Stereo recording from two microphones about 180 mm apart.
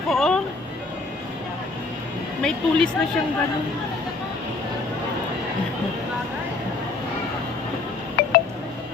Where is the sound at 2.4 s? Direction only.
5° left (ahead or behind).